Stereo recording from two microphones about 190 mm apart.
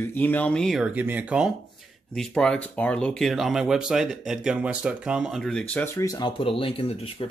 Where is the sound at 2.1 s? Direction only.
5° left (ahead or behind).